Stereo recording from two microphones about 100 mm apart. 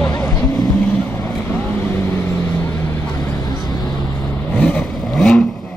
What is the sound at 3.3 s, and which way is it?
Vehicle, 45° left (ahead or behind).